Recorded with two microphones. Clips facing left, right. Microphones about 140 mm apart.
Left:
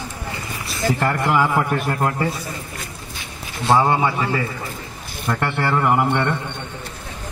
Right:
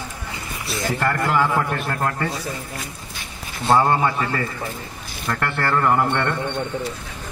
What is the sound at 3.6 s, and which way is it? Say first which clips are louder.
Speech: even; 10° left (ahead or behind).